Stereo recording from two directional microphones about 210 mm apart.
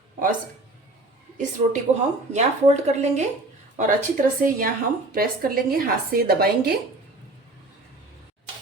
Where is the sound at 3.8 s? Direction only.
40° right (ahead or behind).